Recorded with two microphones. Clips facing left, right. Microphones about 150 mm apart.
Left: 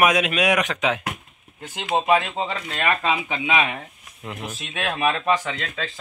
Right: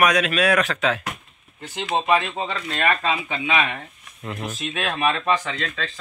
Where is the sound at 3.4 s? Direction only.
15° left (ahead or behind).